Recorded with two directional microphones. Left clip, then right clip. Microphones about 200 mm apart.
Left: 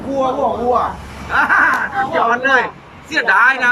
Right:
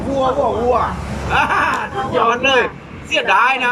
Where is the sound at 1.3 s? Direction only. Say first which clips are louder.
Left 3 dB; 10° right (ahead or behind).